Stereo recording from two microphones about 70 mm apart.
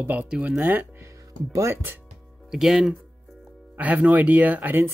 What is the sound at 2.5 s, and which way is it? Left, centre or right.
Speech, centre.